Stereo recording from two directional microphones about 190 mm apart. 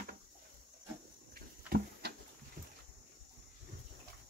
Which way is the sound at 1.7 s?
55° right (ahead or behind).